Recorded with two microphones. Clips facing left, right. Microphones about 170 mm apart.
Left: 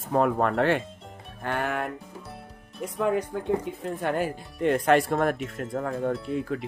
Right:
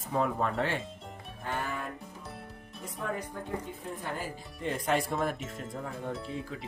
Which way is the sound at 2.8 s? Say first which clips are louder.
Left 11 dB; 85° left.